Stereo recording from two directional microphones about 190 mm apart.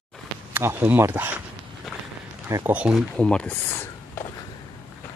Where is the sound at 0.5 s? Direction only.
10° right (ahead or behind).